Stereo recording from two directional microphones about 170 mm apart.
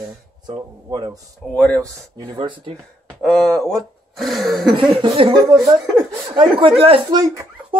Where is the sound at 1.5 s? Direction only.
5° left (ahead or behind).